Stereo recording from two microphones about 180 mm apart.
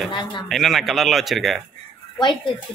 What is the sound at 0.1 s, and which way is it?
Speech, 25° left (ahead or behind).